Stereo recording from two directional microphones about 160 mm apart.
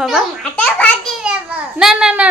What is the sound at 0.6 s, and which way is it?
Speech, 10° left (ahead or behind).